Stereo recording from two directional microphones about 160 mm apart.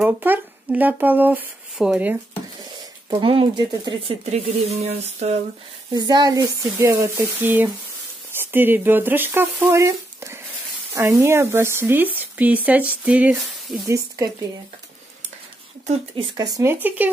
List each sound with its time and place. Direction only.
0.0 s speech: 10° right (ahead or behind)
2.6 s speech: 30° right (ahead or behind)
4.3 s a sound: 40° right (ahead or behind)
5.9 s speech: 25° right (ahead or behind)
8.4 s frying: 10° right (ahead or behind)
11.0 s speech: 15° right (ahead or behind)
16.3 s speech: 20° right (ahead or behind)